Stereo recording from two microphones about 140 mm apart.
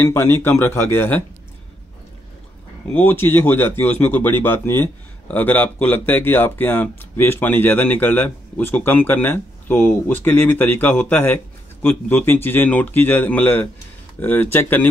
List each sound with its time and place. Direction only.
0.0 s speech: 20° left (ahead or behind)
2.9 s speech: 15° left (ahead or behind)